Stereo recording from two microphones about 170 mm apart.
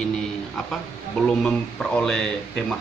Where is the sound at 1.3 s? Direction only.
5° left (ahead or behind).